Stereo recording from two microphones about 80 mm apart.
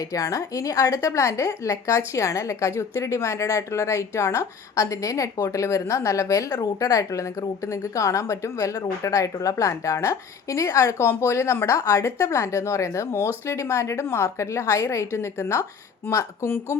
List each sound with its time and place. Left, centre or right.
0.0 s a woman's voice: left
10.9 s a woman's voice: left